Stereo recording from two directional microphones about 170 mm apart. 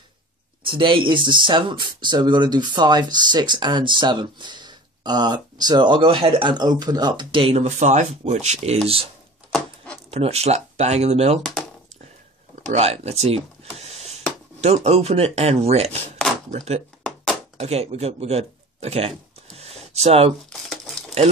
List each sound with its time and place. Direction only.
0.7 s speech: 30° right (ahead or behind)
10.1 s speech: 35° right (ahead or behind)
12.6 s speech: 40° right (ahead or behind)
17.0 s a sound: 5° left (ahead or behind)
17.6 s speech: 40° right (ahead or behind)
20.4 s a sound: centre (ahead or behind)